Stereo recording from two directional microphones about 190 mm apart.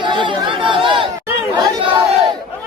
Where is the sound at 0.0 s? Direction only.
25° right (ahead or behind).